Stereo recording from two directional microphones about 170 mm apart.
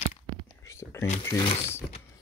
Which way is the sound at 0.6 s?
15° left (ahead or behind).